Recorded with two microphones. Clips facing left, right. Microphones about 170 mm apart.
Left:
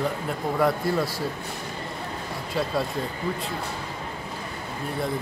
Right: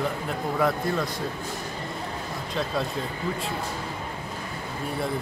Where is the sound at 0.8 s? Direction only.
5° left (ahead or behind).